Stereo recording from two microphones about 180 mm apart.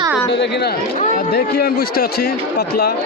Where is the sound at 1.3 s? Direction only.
60° left (ahead or behind).